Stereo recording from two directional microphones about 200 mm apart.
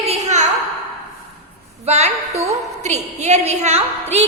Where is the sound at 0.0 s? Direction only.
30° right (ahead or behind).